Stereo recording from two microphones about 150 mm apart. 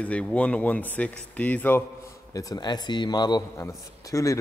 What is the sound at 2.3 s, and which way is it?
A man's voice, 25° left (ahead or behind).